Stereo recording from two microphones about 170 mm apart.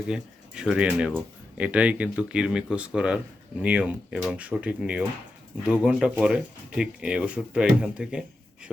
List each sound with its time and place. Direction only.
0.1 s speech: 5° right (ahead or behind)